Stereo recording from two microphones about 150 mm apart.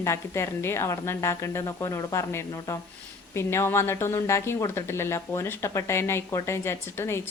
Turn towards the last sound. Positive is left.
turn(degrees=15)  # may be behind; listen again after turning